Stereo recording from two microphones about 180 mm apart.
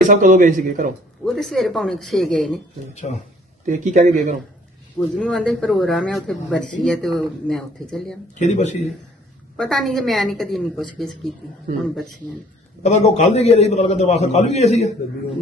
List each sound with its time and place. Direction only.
0.1 s a man's voice: 45° right (ahead or behind)
1.2 s a woman's voice: centre (ahead or behind)
3.0 s a man's voice: 40° left (ahead or behind)
3.7 s a man's voice: 45° right (ahead or behind)
4.9 s a woman's voice: centre (ahead or behind)
8.4 s a man's voice: 40° left (ahead or behind)
9.6 s a woman's voice: centre (ahead or behind)
12.8 s a man's voice: 40° left (ahead or behind)